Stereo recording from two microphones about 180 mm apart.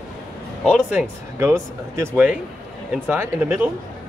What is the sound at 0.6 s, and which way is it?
Speech, 5° right (ahead or behind).